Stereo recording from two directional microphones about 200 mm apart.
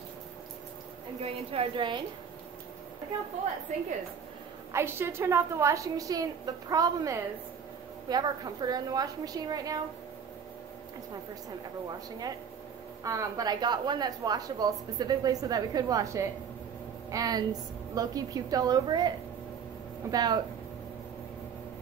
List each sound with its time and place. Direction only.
1.2 s a woman's voice: 30° right (ahead or behind)
4.7 s a woman's voice: 10° right (ahead or behind)
13.0 s a woman's voice: 15° right (ahead or behind)